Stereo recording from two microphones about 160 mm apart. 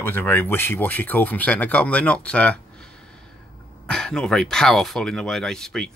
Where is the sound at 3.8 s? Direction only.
5° left (ahead or behind).